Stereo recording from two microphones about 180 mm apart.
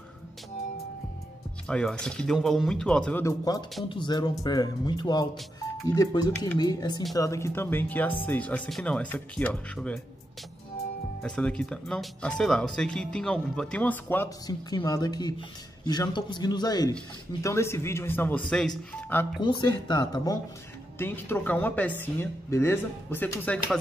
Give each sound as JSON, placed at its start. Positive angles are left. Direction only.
{"t": 1.7, "sound": "speech", "side_deg": 5}
{"t": 11.2, "sound": "speech", "side_deg": 5}
{"t": 19.4, "sound": "speech", "side_deg": 25}
{"t": 21.0, "sound": "speech", "side_deg": 10}